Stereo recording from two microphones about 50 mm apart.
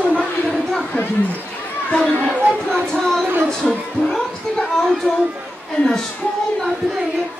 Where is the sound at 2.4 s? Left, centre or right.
Right.